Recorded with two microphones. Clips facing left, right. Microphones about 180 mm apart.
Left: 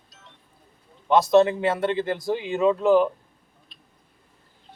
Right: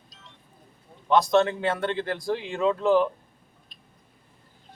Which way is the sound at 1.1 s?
5° left (ahead or behind).